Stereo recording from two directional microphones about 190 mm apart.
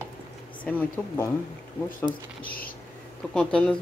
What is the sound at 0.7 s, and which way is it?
Speech, 10° left (ahead or behind).